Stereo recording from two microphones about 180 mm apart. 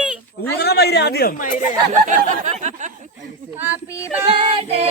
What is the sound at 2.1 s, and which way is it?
Speech, 40° right (ahead or behind).